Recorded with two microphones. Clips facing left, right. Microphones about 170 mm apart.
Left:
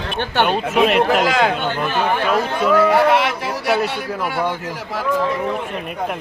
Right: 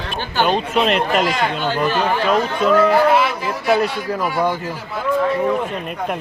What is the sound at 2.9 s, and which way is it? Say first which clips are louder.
Speech: even; 70° left (ahead or behind).